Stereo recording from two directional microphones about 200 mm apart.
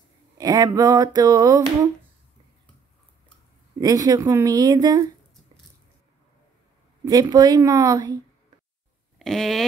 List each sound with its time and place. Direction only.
0.4 s speech: 20° right (ahead or behind)
3.8 s speech: 20° right (ahead or behind)
7.1 s a woman's voice: 20° right (ahead or behind)
9.2 s a sound: centre (ahead or behind)